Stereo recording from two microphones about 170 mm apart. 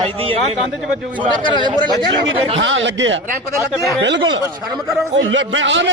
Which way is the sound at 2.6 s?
90° right.